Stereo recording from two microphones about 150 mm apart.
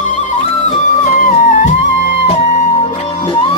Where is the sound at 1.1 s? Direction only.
60° left (ahead or behind).